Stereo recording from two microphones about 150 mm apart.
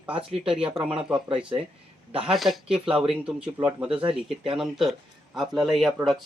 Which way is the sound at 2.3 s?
Centre (ahead or behind).